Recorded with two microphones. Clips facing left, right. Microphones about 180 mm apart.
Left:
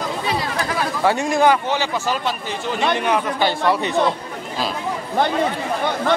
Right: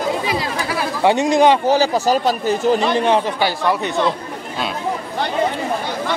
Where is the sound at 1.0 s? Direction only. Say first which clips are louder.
Right 4 dB; 20° right (ahead or behind).